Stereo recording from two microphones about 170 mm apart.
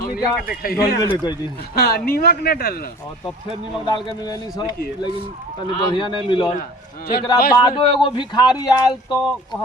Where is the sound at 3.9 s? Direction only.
25° left (ahead or behind).